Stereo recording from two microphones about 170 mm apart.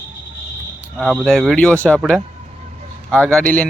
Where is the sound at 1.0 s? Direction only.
Centre (ahead or behind).